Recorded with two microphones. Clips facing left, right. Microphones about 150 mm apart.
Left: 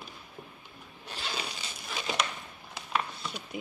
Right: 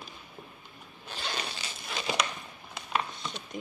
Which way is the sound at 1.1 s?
5° left (ahead or behind).